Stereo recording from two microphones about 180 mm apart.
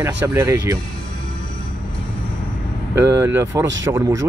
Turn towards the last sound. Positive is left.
turn(degrees=-20)  # may be behind; listen again after turning